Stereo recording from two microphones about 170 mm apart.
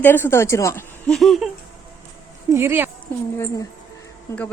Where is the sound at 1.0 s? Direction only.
Centre (ahead or behind).